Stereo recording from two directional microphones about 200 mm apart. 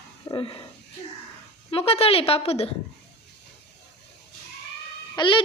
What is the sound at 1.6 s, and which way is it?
A woman's voice, 30° left (ahead or behind).